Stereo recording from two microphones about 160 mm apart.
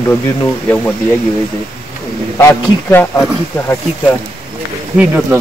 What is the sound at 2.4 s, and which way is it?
Speech, 15° left (ahead or behind).